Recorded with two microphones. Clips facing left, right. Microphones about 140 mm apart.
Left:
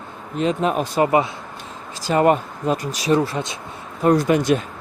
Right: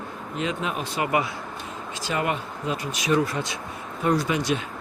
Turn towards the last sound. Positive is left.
turn(degrees=50)  # may be behind; listen again after turning